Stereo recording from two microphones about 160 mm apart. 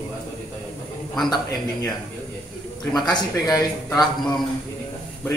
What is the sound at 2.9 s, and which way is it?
Speech, 25° left (ahead or behind).